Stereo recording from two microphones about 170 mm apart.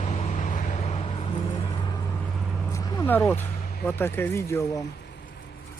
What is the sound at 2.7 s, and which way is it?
Vehicle, 20° left (ahead or behind).